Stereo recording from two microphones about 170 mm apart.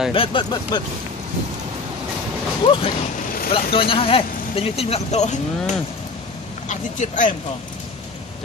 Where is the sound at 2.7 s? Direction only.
35° left (ahead or behind).